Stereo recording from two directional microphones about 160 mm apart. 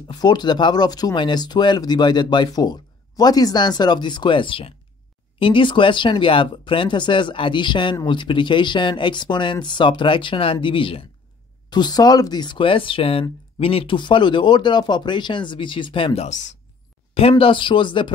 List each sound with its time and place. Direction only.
0.1 s speech: 25° left (ahead or behind)
16.3 s speech: 50° left (ahead or behind)
17.1 s speech: 35° left (ahead or behind)